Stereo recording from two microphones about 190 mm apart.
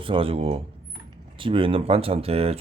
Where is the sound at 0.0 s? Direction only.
30° right (ahead or behind).